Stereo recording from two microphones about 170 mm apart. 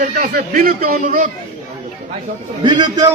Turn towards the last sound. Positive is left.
turn(degrees=-25)  # may be behind; listen again after turning